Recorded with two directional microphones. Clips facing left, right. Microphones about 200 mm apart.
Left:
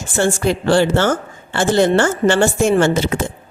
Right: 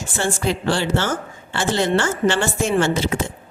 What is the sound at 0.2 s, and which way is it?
Speech, 45° left (ahead or behind).